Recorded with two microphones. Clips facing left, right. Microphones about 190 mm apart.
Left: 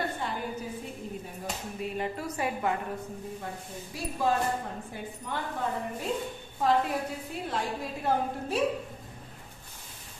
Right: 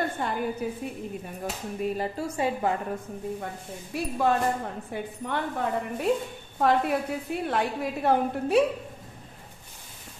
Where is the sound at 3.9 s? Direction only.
60° right (ahead or behind).